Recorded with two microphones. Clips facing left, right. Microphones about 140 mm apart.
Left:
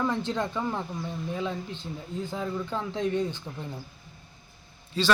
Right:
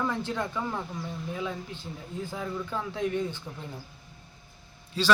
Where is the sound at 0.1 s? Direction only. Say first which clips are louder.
Left 2 dB; 20° left (ahead or behind).